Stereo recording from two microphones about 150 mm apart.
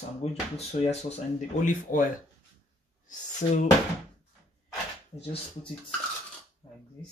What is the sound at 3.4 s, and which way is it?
Speech, 65° left (ahead or behind).